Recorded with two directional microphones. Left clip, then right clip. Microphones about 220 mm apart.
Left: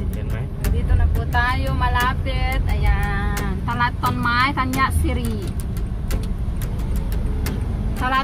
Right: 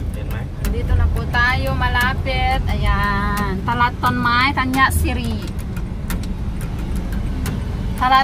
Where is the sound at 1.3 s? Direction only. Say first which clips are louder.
Right 4 dB; centre (ahead or behind).